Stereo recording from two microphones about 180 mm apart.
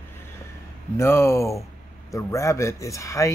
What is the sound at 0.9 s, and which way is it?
Speech, 15° left (ahead or behind).